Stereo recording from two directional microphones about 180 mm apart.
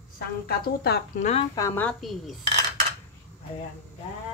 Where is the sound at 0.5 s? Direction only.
60° left (ahead or behind).